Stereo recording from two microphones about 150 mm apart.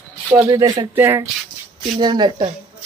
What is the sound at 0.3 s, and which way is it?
Speech, 20° right (ahead or behind).